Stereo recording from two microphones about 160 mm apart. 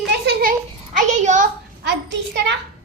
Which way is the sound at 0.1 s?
80° right.